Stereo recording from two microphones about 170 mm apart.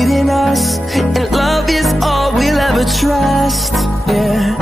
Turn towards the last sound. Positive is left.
turn(degrees=0)  # may be behind; listen again after turning